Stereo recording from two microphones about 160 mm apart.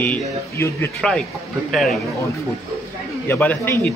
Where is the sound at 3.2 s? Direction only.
15° left (ahead or behind).